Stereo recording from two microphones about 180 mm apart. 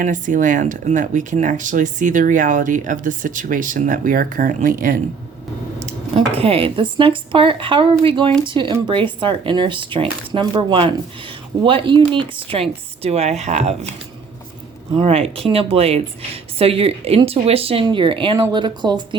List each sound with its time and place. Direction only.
0.0 s speech: 45° right (ahead or behind)
5.8 s speech: 35° right (ahead or behind)
14.9 s speech: 35° right (ahead or behind)